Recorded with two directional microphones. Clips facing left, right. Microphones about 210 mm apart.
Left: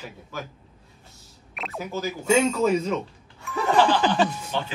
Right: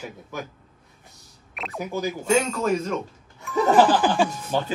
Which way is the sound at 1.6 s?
Centre (ahead or behind).